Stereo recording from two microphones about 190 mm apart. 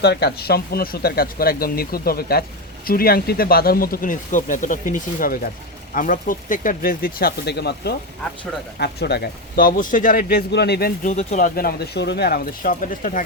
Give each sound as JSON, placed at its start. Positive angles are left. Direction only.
{"t": 0.0, "sound": "speech", "side_deg": 60}
{"t": 11.1, "sound": "speech", "side_deg": 35}